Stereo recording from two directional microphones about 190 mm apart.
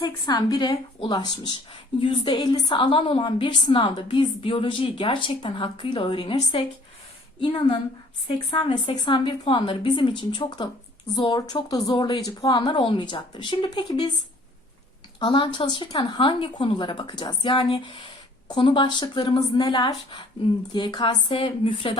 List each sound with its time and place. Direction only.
0.0 s speech: 20° left (ahead or behind)
8.3 s speech: 25° left (ahead or behind)
15.2 s speech: 25° left (ahead or behind)